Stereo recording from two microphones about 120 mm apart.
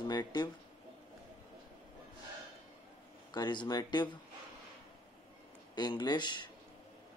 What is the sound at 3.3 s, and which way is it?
Speech, 40° left (ahead or behind).